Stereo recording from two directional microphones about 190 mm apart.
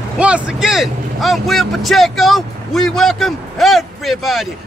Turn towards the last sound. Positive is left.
turn(degrees=0)  # may be behind; listen again after turning